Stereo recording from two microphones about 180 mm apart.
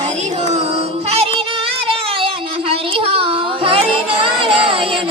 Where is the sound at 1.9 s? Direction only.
30° right (ahead or behind).